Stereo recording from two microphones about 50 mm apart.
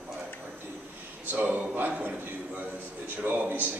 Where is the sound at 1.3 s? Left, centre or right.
Right.